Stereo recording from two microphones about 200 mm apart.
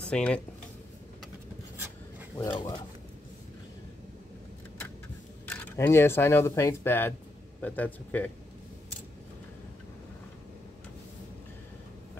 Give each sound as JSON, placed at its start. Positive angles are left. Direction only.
{"t": 0.0, "sound": "speech", "side_deg": 5}
{"t": 2.3, "sound": "speech", "side_deg": 20}
{"t": 5.5, "sound": "speech", "side_deg": 10}